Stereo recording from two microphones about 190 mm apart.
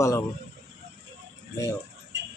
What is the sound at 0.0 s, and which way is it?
Speech, 15° left (ahead or behind).